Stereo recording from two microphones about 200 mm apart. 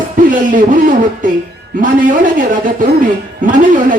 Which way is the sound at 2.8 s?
40° right (ahead or behind).